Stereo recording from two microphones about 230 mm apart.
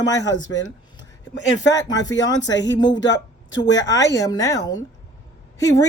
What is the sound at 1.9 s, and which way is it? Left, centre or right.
Speech, centre.